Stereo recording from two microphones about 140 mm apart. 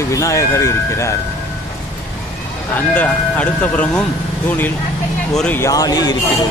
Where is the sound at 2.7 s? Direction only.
10° left (ahead or behind).